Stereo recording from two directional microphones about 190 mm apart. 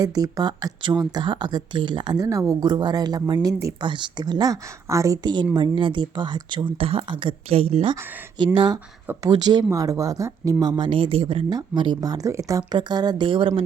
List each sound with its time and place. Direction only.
0.0 s speech: 20° right (ahead or behind)
7.9 s speech: 15° right (ahead or behind)